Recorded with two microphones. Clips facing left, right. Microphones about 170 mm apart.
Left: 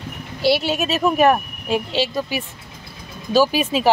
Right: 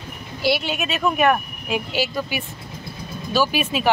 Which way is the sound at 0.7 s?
35° left (ahead or behind).